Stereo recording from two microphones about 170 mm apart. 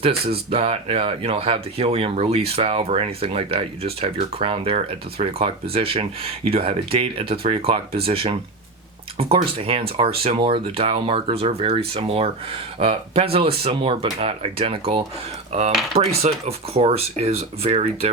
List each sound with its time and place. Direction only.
0.3 s speech: 35° right (ahead or behind)